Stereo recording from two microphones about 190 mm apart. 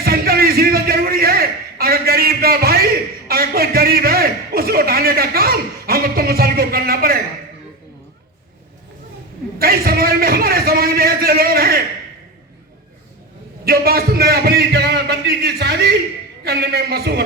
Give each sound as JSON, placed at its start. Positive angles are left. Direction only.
{"t": 0.0, "sound": "a man's voice", "side_deg": -50}
{"t": 9.6, "sound": "a man's voice", "side_deg": -50}
{"t": 13.7, "sound": "a man's voice", "side_deg": -50}